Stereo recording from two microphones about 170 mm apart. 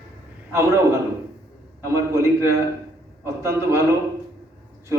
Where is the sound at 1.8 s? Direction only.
15° right (ahead or behind).